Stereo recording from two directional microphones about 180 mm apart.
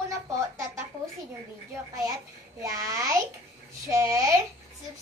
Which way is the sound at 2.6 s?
20° right (ahead or behind).